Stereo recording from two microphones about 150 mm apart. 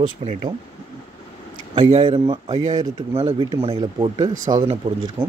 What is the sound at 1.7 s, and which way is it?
Speech, 40° right (ahead or behind).